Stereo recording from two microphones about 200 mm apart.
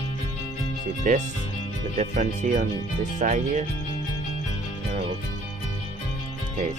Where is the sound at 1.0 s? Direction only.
40° right (ahead or behind).